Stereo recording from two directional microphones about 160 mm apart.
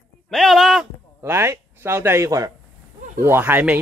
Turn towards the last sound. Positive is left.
turn(degrees=-10)  # may be behind; listen again after turning